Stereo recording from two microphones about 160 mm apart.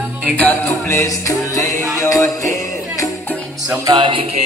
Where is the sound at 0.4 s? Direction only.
10° left (ahead or behind).